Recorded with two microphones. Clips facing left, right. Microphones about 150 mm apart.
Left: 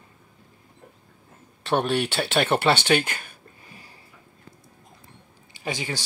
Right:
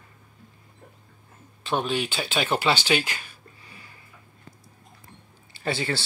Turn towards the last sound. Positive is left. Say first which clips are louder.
# right 3 dB
turn(degrees=15)  # may be behind; listen again after turning